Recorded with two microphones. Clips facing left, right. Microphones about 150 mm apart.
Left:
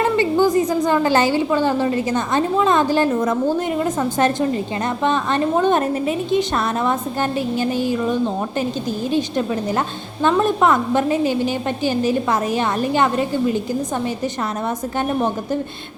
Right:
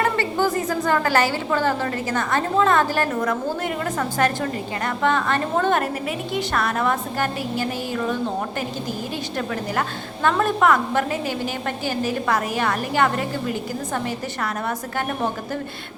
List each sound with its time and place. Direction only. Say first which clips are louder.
0.0 s a woman's voice: left 5 dB; 15° left (ahead or behind)
10.2 s a woman's voice: left 3 dB; 20° left (ahead or behind)